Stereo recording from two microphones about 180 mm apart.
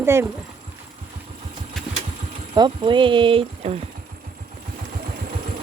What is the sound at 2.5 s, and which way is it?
Speech, 25° right (ahead or behind).